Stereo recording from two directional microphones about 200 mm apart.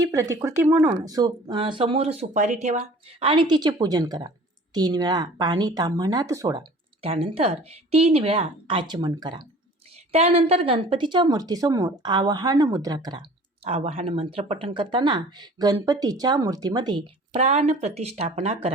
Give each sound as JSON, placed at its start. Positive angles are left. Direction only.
{"t": 0.0, "sound": "speech", "side_deg": -15}
{"t": 10.1, "sound": "speech", "side_deg": -30}
{"t": 13.7, "sound": "speech", "side_deg": -30}
{"t": 17.3, "sound": "speech", "side_deg": -35}